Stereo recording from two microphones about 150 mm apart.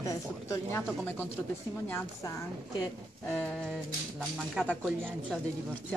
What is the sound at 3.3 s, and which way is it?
Speech, centre (ahead or behind).